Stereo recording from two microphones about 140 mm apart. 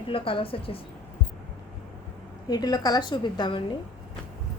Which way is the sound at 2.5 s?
30° left (ahead or behind).